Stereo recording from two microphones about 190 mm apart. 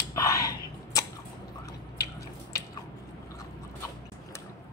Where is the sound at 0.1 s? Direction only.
15° left (ahead or behind).